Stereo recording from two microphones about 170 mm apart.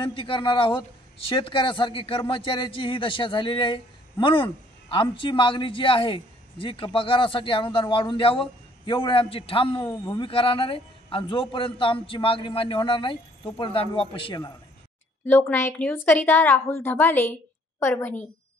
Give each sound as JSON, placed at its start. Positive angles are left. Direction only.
{"t": 0.0, "sound": "a man's voice", "side_deg": 30}
{"t": 15.2, "sound": "a woman's voice", "side_deg": 10}